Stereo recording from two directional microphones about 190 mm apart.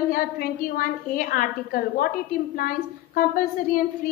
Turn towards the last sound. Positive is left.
turn(degrees=50)  # may be behind; listen again after turning